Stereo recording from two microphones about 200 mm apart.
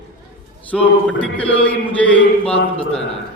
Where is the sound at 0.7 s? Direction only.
5° left (ahead or behind).